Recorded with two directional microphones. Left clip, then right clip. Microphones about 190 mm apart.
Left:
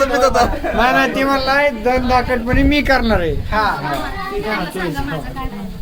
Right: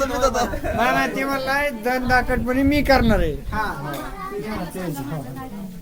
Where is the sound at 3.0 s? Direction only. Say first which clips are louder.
Left 4 dB; 50° right (ahead or behind).